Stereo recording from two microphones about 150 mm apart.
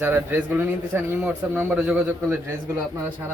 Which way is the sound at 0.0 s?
15° right (ahead or behind).